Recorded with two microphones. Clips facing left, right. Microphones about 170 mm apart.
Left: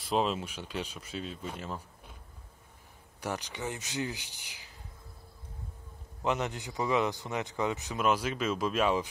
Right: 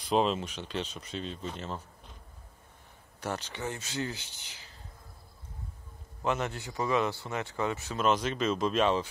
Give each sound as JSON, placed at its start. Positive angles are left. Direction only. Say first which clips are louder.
{"t": 0.0, "sound": "a man's voice", "louder": "right 2 dB", "side_deg": 5}
{"t": 3.2, "sound": "a man's voice", "louder": "even", "side_deg": 15}
{"t": 6.2, "sound": "a man's voice", "louder": "even", "side_deg": 15}